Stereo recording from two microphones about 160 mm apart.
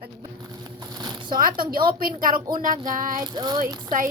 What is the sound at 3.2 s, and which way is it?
Speech, 25° right (ahead or behind).